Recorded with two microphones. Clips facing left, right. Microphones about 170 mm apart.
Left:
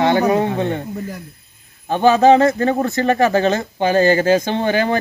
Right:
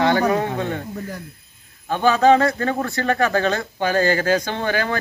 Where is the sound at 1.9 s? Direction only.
20° left (ahead or behind).